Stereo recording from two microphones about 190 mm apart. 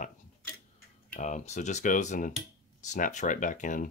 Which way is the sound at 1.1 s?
40° left (ahead or behind).